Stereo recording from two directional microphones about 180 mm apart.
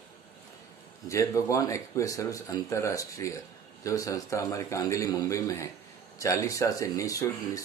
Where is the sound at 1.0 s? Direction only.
15° left (ahead or behind).